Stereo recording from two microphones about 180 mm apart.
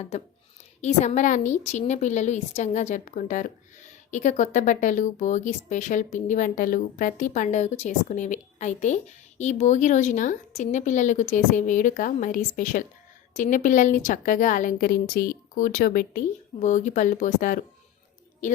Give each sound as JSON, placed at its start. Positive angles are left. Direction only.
{"t": 0.8, "sound": "a woman's voice", "side_deg": 40}